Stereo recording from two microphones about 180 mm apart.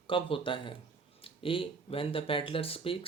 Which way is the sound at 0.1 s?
30° left (ahead or behind).